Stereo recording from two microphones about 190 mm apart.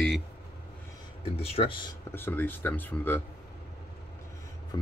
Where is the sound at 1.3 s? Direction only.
30° left (ahead or behind).